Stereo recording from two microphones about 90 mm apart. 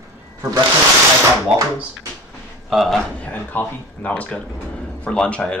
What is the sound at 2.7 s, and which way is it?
Speech, centre (ahead or behind).